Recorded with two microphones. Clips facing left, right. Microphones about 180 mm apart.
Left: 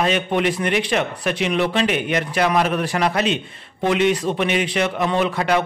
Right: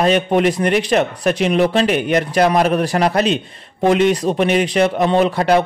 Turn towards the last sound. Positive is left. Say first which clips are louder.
# right 5 dB
turn(degrees=-35)  # may be behind; listen again after turning